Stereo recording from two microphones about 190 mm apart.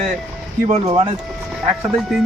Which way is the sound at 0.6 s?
30° right (ahead or behind).